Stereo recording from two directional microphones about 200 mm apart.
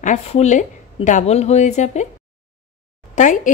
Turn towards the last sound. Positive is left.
turn(degrees=40)  # may be behind; listen again after turning